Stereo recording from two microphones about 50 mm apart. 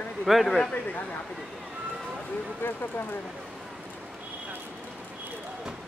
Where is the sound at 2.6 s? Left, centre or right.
Left.